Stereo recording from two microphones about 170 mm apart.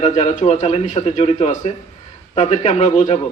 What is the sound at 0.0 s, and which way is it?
A man's voice, 40° left (ahead or behind).